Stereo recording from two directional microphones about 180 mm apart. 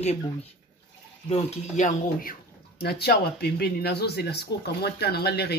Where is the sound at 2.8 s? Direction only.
60° left (ahead or behind).